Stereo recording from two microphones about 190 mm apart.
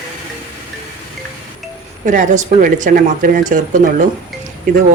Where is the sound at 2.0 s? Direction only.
40° right (ahead or behind).